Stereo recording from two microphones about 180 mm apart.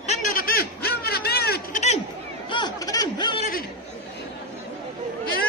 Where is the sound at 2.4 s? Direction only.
25° left (ahead or behind).